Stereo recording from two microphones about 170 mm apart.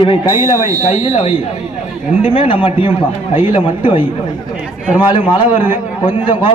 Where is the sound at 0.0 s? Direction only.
30° left (ahead or behind).